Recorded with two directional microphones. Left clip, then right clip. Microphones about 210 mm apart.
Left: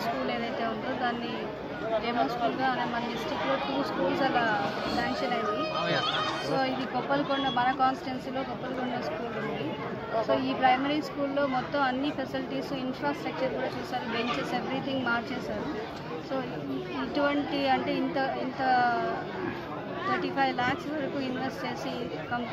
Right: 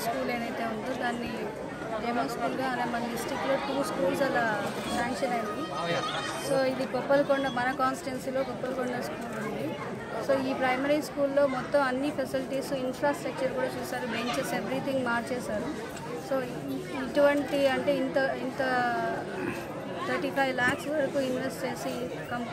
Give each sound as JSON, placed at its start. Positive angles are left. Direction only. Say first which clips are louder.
{"t": 5.9, "sound": "speech", "louder": "left 1 dB", "side_deg": 40}
{"t": 6.5, "sound": "speech", "louder": "right 5 dB", "side_deg": -5}
{"t": 10.2, "sound": "speech", "louder": "left 2 dB", "side_deg": 0}
{"t": 17.1, "sound": "speech", "louder": "right 5 dB", "side_deg": -5}
{"t": 20.3, "sound": "speech", "louder": "right 2 dB", "side_deg": -5}